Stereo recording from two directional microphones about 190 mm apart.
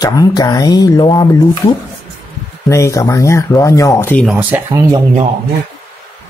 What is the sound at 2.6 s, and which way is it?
Speech, 15° left (ahead or behind).